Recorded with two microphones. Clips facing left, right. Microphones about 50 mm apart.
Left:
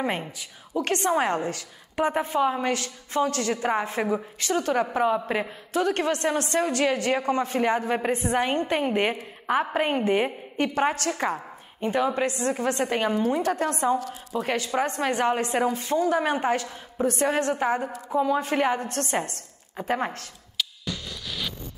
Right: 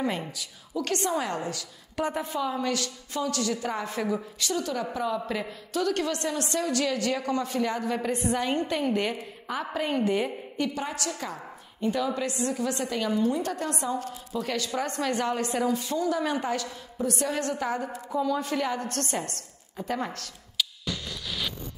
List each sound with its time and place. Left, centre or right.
0.2 s a woman's voice: left
21.3 s zipper: centre